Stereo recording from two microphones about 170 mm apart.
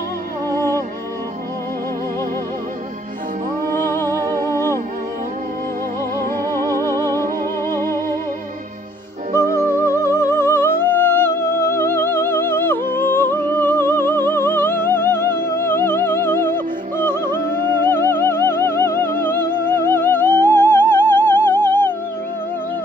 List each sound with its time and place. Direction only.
0.6 s music: 15° left (ahead or behind)
3.7 s music: 15° left (ahead or behind)
6.5 s music: 15° left (ahead or behind)
6.9 s music: 20° right (ahead or behind)
7.7 s music: 15° left (ahead or behind)
9.7 s music: 15° left (ahead or behind)